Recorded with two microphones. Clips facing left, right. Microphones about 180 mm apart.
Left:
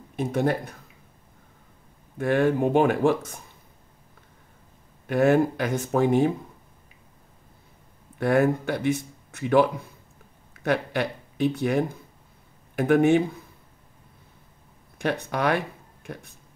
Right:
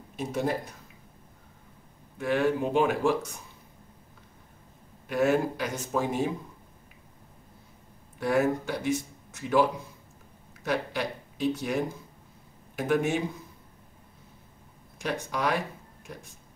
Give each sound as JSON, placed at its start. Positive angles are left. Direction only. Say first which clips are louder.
{"t": 0.1, "sound": "speech", "louder": "left 5 dB", "side_deg": 55}
{"t": 2.1, "sound": "speech", "louder": "left 4 dB", "side_deg": 50}
{"t": 5.0, "sound": "speech", "louder": "left 5 dB", "side_deg": 55}
{"t": 8.2, "sound": "speech", "louder": "left 4 dB", "side_deg": 55}
{"t": 15.0, "sound": "speech", "louder": "left 5 dB", "side_deg": 55}